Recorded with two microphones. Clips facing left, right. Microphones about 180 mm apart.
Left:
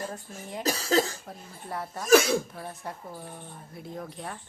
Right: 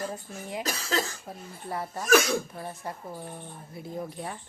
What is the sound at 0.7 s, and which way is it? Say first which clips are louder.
Speech: left 9 dB; 40° left (ahead or behind).